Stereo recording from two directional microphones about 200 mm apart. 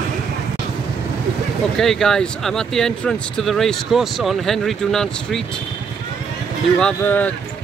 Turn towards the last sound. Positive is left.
turn(degrees=10)  # may be behind; listen again after turning